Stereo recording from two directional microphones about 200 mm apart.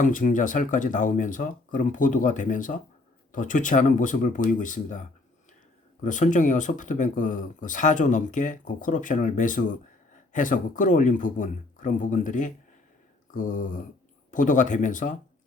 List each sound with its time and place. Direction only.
0.0 s speech: 40° left (ahead or behind)